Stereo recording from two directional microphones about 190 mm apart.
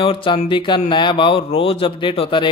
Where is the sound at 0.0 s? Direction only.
25° left (ahead or behind).